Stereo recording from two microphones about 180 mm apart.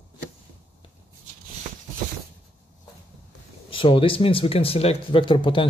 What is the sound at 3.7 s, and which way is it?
Speech, 30° left (ahead or behind).